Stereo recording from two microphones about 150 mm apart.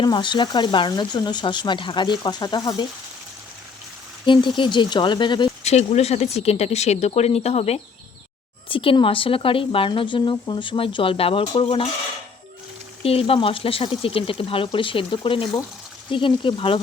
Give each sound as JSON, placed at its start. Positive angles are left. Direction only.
{"t": 0.0, "sound": "speech", "side_deg": 30}
{"t": 4.3, "sound": "speech", "side_deg": 35}
{"t": 5.6, "sound": "speech", "side_deg": 45}
{"t": 13.0, "sound": "speech", "side_deg": 40}